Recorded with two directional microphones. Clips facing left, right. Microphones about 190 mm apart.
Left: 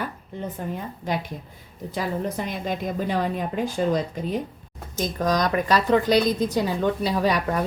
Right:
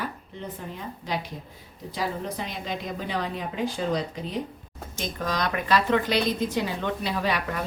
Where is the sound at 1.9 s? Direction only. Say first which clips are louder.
Left 3 dB; 50° left (ahead or behind).